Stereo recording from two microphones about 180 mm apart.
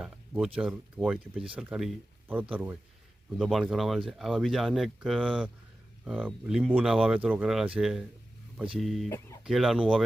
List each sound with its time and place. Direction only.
0.0 s speech: 5° right (ahead or behind)
9.0 s speech: 15° left (ahead or behind)
9.4 s speech: centre (ahead or behind)